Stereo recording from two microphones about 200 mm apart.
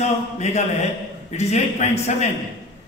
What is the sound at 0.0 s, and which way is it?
A man's voice, 35° left (ahead or behind).